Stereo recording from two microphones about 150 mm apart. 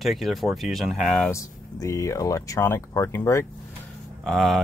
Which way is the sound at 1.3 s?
20° left (ahead or behind).